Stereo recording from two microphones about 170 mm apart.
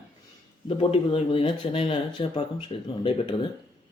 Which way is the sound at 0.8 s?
35° left (ahead or behind).